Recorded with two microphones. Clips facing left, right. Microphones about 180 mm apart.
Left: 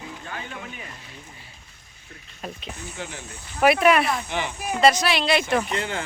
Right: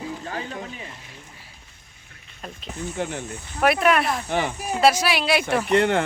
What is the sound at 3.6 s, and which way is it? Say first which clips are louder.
A woman's voice: left 1 dB; centre (ahead or behind).